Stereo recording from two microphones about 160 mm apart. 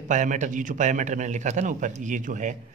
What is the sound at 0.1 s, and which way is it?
A man's voice, 50° right (ahead or behind).